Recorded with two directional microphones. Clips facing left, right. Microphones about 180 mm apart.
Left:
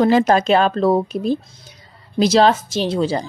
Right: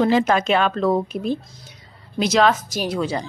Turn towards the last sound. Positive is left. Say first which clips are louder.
# left 4 dB
turn(degrees=30)  # may be behind; listen again after turning